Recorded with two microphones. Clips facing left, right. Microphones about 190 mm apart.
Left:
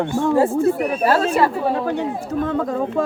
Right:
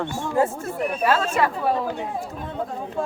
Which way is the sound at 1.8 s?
75° left (ahead or behind).